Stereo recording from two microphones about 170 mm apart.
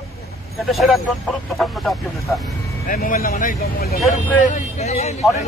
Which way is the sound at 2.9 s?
55° left (ahead or behind).